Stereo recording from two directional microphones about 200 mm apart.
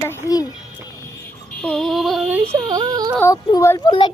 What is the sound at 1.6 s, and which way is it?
Speech, 5° left (ahead or behind).